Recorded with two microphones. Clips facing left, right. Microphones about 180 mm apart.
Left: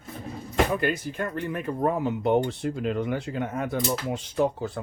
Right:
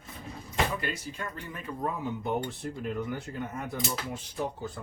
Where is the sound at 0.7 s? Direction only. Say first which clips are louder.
Left 8 dB; 60° left (ahead or behind).